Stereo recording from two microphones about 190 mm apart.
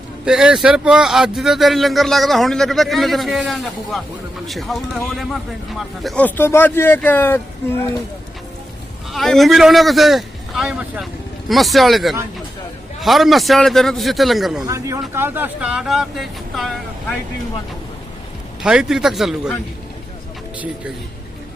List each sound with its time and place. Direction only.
0.3 s a man's voice: 5° right (ahead or behind); by 7.9 s 10° left (ahead or behind)
9.1 s a man's voice: centre (ahead or behind)
14.7 s a man's voice: 15° right (ahead or behind); by 17.2 s centre (ahead or behind)
18.6 s a man's voice: 5° right (ahead or behind)